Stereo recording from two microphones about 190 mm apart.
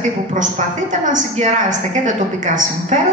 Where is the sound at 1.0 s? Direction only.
40° right (ahead or behind).